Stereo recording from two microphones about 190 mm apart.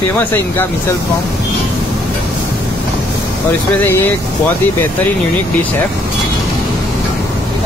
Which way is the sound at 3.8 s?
15° left (ahead or behind).